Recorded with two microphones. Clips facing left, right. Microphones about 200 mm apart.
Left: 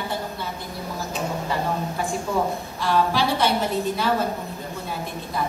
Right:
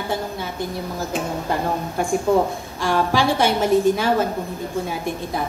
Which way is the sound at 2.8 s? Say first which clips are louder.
Right 2 dB; 50° right (ahead or behind).